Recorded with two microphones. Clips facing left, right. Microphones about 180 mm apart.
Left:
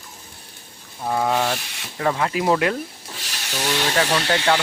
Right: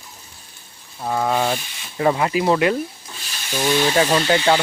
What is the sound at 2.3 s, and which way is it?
Speech, centre (ahead or behind).